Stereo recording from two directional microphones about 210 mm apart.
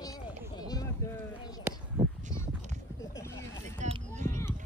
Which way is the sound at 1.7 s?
10° right (ahead or behind).